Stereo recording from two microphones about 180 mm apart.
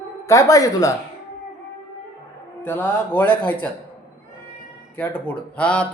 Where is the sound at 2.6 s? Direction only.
10° left (ahead or behind).